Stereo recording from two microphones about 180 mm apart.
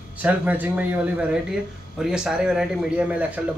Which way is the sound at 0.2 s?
10° right (ahead or behind).